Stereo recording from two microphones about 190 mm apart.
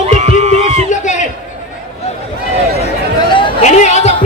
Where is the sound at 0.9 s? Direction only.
40° left (ahead or behind).